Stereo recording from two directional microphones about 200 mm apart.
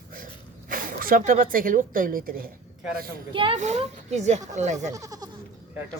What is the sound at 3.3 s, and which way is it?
Speech, 25° right (ahead or behind).